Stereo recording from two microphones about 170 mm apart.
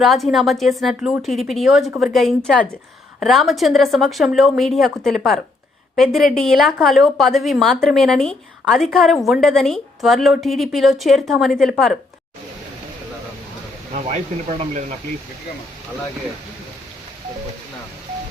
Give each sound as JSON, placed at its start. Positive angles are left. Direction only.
{"t": 0.0, "sound": "a woman's voice", "side_deg": 0}
{"t": 14.6, "sound": "speech", "side_deg": -45}